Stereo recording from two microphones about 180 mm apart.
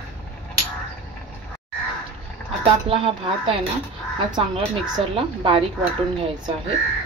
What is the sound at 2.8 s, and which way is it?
Speech, 30° right (ahead or behind).